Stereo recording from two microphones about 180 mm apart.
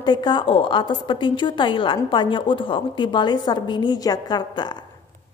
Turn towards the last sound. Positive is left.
turn(degrees=25)  # may be behind; listen again after turning